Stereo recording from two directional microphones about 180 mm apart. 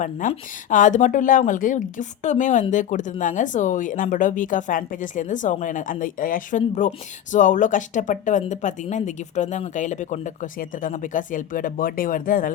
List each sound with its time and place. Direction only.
0.0 s a woman's voice: 45° left (ahead or behind)